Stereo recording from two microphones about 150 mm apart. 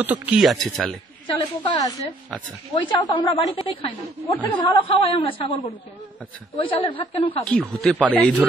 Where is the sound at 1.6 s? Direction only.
25° left (ahead or behind).